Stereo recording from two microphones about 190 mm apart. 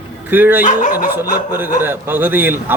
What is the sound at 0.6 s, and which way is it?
Speech, 45° left (ahead or behind).